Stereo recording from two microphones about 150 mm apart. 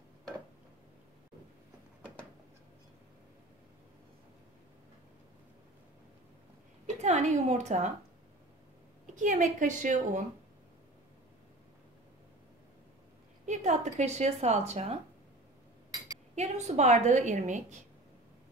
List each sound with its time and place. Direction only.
7.0 s a woman's voice: 50° right (ahead or behind)
9.1 s a woman's voice: 55° right (ahead or behind)
13.5 s a woman's voice: 50° right (ahead or behind)
16.3 s a woman's voice: 50° right (ahead or behind)